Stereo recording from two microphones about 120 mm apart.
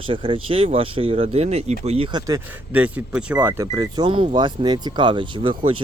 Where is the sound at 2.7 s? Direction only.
15° right (ahead or behind).